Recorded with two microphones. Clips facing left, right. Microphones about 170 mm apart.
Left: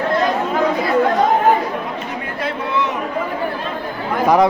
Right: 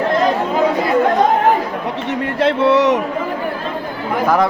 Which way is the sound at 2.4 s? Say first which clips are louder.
Right 9 dB; 85° right.